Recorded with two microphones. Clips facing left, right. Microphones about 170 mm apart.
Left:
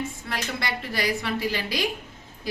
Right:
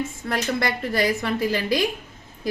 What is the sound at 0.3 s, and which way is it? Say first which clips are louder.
A woman's voice: right 10 dB; 50° right (ahead or behind).